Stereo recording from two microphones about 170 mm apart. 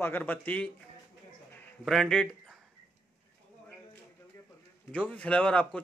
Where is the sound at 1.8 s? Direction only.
Centre (ahead or behind).